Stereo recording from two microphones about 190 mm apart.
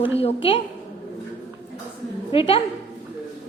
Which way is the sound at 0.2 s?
30° left (ahead or behind).